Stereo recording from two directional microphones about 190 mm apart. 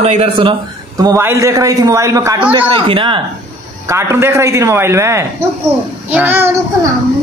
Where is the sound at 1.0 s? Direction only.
15° right (ahead or behind).